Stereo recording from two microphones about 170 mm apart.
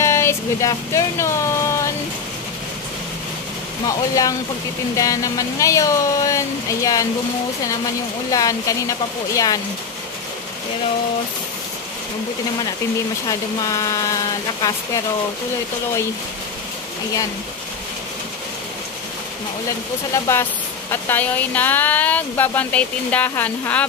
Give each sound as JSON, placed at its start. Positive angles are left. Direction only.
{"t": 0.0, "sound": "a sound", "side_deg": 15}
{"t": 3.8, "sound": "speech", "side_deg": 20}
{"t": 8.3, "sound": "speech", "side_deg": 20}
{"t": 13.3, "sound": "speech", "side_deg": 20}
{"t": 20.9, "sound": "speech", "side_deg": 10}